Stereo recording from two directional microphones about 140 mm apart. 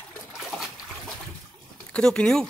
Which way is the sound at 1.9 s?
5° left (ahead or behind).